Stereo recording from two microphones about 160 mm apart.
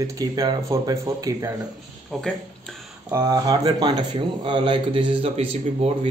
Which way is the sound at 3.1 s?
20° right (ahead or behind).